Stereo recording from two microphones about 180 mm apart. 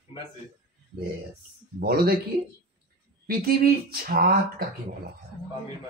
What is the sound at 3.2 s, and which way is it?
Speech, 60° right (ahead or behind).